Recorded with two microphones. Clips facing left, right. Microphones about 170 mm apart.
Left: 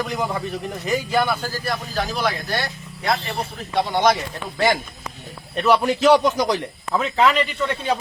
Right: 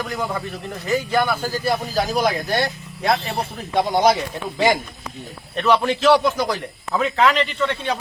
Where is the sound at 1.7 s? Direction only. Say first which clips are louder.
Right 4 dB; 35° right (ahead or behind).